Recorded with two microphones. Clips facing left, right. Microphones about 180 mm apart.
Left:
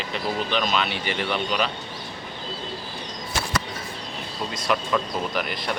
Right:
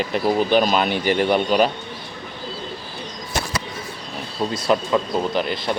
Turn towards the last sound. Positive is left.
turn(degrees=-30)  # may be behind; listen again after turning